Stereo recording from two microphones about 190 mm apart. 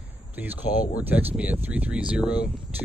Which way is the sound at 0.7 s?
45° left (ahead or behind).